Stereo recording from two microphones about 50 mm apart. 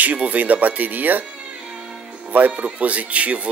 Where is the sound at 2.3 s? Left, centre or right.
Right.